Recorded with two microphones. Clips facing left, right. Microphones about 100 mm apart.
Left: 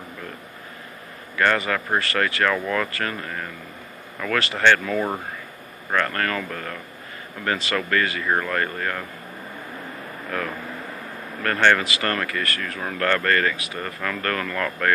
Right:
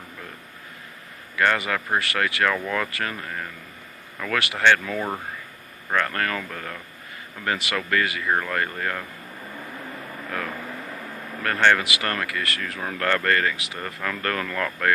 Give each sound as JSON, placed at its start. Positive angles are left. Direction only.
{"t": 1.4, "sound": "speech", "side_deg": -15}
{"t": 2.5, "sound": "speech", "side_deg": 0}
{"t": 2.9, "sound": "speech", "side_deg": -15}
{"t": 4.3, "sound": "speech", "side_deg": -15}
{"t": 4.9, "sound": "speech", "side_deg": 10}
{"t": 5.9, "sound": "speech", "side_deg": -5}
{"t": 8.3, "sound": "speech", "side_deg": 0}
{"t": 11.4, "sound": "speech", "side_deg": -15}